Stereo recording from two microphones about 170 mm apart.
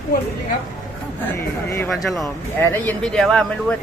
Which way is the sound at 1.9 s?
Centre (ahead or behind).